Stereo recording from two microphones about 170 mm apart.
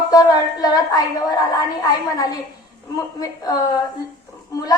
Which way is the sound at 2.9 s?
20° left (ahead or behind).